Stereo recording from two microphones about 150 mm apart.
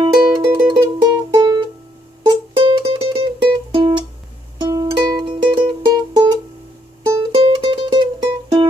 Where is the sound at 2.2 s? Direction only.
35° right (ahead or behind).